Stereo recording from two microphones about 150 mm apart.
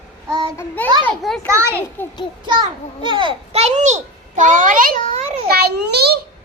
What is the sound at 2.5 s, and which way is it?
A child's voice, 35° right (ahead or behind).